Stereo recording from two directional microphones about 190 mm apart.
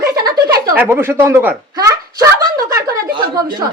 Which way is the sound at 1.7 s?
20° right (ahead or behind).